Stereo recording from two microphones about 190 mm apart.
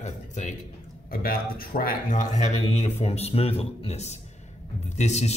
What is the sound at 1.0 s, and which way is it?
Speech, 50° left (ahead or behind).